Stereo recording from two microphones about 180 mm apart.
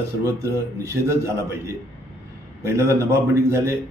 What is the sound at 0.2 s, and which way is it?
Speech, 20° right (ahead or behind).